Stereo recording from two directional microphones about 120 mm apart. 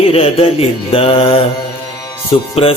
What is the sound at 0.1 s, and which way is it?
Music, 55° left (ahead or behind).